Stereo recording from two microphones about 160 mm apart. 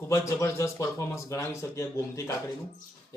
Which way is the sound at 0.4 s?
20° left (ahead or behind).